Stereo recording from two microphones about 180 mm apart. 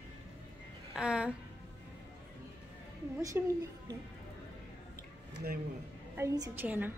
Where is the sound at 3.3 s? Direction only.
10° right (ahead or behind).